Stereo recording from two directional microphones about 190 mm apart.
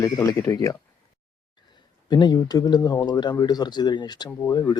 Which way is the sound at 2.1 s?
20° left (ahead or behind).